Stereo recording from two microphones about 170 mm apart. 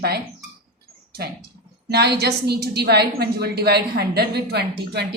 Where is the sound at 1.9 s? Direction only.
70° right (ahead or behind).